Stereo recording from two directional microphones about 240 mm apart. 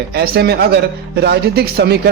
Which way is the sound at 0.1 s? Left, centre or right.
Right.